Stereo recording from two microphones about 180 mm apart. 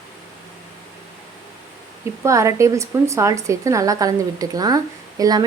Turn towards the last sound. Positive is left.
turn(degrees=-20)  # may be behind; listen again after turning